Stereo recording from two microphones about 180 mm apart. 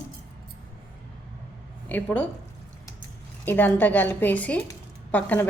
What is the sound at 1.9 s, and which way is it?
Speech, 10° left (ahead or behind).